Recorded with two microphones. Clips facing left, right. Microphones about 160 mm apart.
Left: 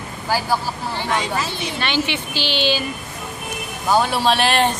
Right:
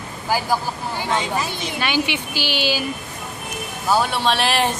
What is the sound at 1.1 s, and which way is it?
A woman's voice, 15° right (ahead or behind).